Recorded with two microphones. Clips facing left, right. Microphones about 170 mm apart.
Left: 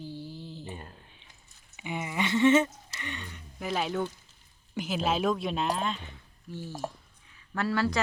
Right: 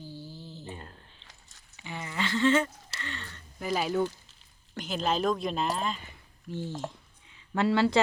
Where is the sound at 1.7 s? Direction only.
20° left (ahead or behind).